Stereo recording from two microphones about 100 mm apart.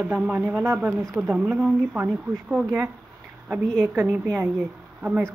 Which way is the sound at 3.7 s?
10° right (ahead or behind).